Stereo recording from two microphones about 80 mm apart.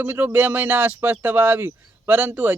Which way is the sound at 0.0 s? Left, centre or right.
Right.